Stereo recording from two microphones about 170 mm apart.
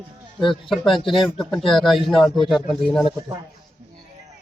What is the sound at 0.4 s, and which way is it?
Speech, 30° left (ahead or behind).